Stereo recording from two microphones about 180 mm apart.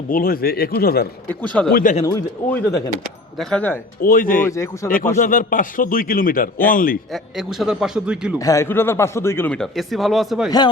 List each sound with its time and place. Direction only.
0.1 s speech: 55° left (ahead or behind)
1.7 s a man's voice: 45° left (ahead or behind)
2.0 s speech: 15° left (ahead or behind)
4.0 s a man's voice: 50° left (ahead or behind)
4.4 s speech: 15° left (ahead or behind)
5.1 s a man's voice: 50° left (ahead or behind)
7.1 s a man's voice: centre (ahead or behind)
8.4 s speech: 20° left (ahead or behind); by 10.5 s centre (ahead or behind)